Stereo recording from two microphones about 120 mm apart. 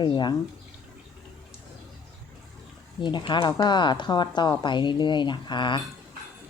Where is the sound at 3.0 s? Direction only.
40° left (ahead or behind).